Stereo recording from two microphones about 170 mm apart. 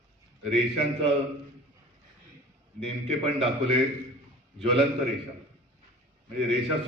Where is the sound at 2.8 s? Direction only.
35° right (ahead or behind).